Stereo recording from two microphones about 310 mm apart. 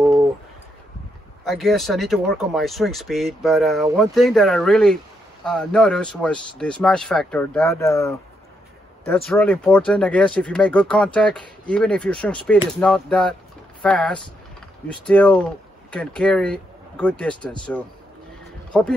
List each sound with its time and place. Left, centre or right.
1.4 s speech: centre